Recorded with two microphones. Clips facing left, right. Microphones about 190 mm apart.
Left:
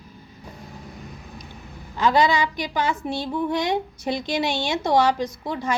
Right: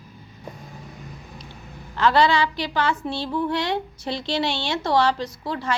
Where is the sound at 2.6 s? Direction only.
15° left (ahead or behind).